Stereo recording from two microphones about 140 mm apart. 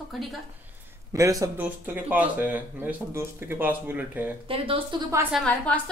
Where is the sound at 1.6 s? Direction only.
10° right (ahead or behind).